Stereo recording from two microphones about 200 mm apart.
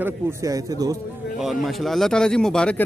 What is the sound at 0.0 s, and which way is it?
Speech, 15° right (ahead or behind).